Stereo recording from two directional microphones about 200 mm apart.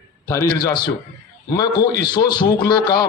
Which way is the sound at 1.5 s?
20° left (ahead or behind).